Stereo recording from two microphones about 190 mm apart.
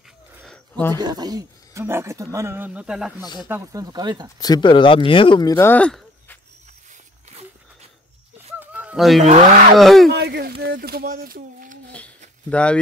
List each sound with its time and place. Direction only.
0.4 s a sound: 5° left (ahead or behind)
1.0 s speech: 20° right (ahead or behind)
4.4 s speech: 20° left (ahead or behind); by 6.3 s 5° left (ahead or behind)
8.5 s a sound: 5° right (ahead or behind)
9.2 s speech: 40° right (ahead or behind)
9.8 s speech: centre (ahead or behind)
10.0 s a sound: 55° right (ahead or behind)
10.8 s speech: 50° right (ahead or behind)
12.4 s speech: 5° left (ahead or behind)